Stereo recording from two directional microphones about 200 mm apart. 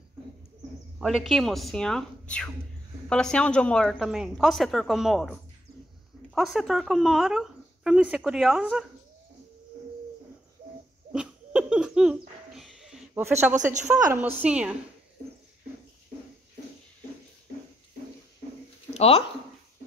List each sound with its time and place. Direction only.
0.9 s a woman's voice: centre (ahead or behind)
11.1 s a sound: 5° right (ahead or behind)
13.6 s a woman's voice: 40° right (ahead or behind)
14.1 s a woman's voice: 10° right (ahead or behind)
18.9 s speech: 30° left (ahead or behind)